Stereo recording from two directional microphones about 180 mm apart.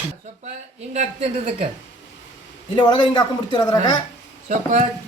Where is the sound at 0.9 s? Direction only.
40° right (ahead or behind).